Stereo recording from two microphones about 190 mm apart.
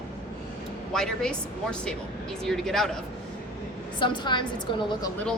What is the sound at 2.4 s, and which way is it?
Speech, centre (ahead or behind).